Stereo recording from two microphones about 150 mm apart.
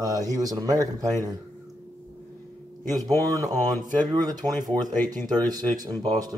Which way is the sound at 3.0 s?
25° right (ahead or behind).